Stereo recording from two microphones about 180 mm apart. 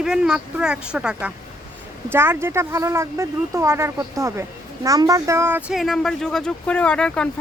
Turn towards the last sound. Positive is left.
turn(degrees=5)  # may be behind; listen again after turning